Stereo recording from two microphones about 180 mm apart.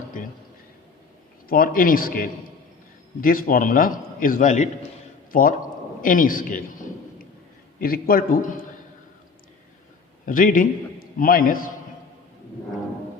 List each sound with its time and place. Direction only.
1.5 s a man's voice: 55° left (ahead or behind)
7.8 s a man's voice: 55° left (ahead or behind)
10.2 s a man's voice: 50° left (ahead or behind)